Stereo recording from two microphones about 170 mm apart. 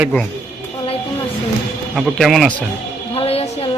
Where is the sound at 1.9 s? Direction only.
Centre (ahead or behind).